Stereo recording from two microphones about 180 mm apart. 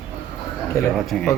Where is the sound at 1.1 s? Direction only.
Centre (ahead or behind).